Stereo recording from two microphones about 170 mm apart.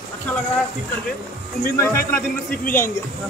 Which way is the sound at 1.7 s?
15° left (ahead or behind).